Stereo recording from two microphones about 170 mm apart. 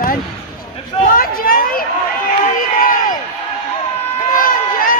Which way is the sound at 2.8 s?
55° left (ahead or behind).